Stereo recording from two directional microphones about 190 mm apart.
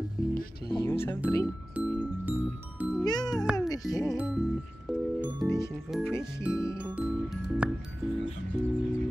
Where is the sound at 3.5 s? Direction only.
20° left (ahead or behind).